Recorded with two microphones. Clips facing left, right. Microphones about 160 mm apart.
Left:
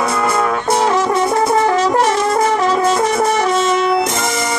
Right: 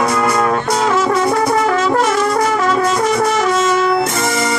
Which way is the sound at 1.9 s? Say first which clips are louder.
Even; 20° left (ahead or behind).